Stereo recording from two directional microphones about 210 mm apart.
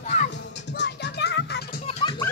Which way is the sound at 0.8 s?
55° left (ahead or behind).